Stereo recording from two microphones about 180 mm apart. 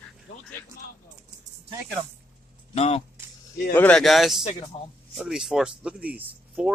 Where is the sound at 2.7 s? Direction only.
35° left (ahead or behind).